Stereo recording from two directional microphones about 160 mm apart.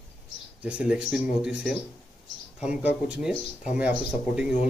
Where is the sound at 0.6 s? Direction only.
5° right (ahead or behind).